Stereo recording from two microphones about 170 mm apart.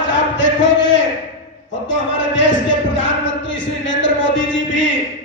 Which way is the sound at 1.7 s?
90° left.